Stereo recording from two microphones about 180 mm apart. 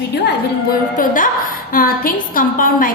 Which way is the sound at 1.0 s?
50° left (ahead or behind).